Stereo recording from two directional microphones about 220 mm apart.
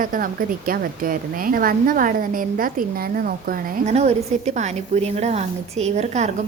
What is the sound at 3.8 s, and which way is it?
A woman's voice, 30° right (ahead or behind).